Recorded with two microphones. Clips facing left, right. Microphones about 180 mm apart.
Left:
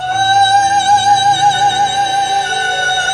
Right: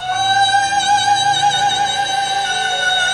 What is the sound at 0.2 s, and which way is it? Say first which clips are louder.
Music: left 5 dB; 40° left (ahead or behind).